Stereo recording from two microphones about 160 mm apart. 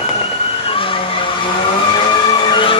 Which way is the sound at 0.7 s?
35° left (ahead or behind).